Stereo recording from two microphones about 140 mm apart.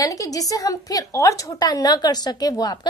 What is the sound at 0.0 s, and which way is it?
A woman's voice, 25° left (ahead or behind).